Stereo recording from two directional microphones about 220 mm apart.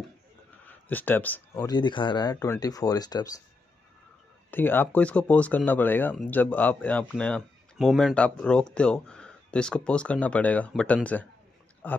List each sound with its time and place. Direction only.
0.7 s speech: 10° left (ahead or behind)
1.7 s speech: 20° left (ahead or behind)
4.5 s speech: 10° left (ahead or behind)